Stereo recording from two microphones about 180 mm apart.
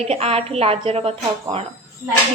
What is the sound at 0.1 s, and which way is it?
A woman's voice, 35° right (ahead or behind).